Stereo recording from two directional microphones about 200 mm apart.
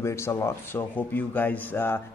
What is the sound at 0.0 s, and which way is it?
A man's voice, 15° left (ahead or behind).